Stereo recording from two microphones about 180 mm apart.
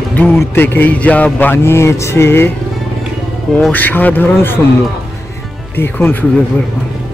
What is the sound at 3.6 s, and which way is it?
A man's voice, 10° left (ahead or behind).